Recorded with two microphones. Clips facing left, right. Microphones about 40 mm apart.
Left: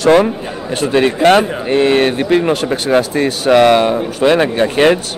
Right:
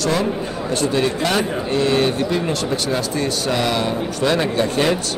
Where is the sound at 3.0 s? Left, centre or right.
Left.